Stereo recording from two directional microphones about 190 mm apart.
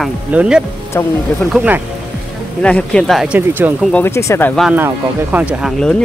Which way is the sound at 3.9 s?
10° left (ahead or behind).